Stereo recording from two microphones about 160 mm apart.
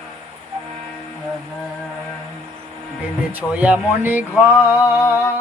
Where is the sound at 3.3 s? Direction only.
10° right (ahead or behind).